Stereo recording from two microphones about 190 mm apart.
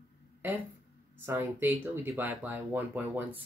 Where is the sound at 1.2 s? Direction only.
10° right (ahead or behind).